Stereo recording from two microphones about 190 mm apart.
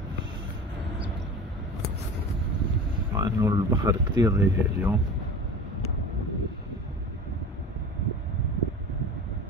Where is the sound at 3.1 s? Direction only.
20° right (ahead or behind).